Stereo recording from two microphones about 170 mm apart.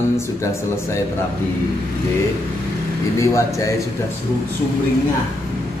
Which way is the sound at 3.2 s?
20° left (ahead or behind).